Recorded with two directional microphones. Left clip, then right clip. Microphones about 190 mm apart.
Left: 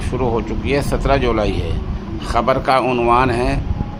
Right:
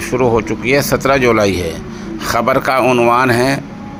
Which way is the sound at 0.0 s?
15° right (ahead or behind).